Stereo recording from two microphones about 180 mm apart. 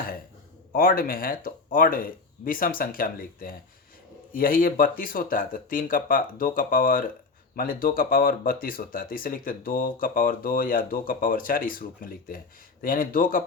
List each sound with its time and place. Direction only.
0.7 s speech: 50° left (ahead or behind)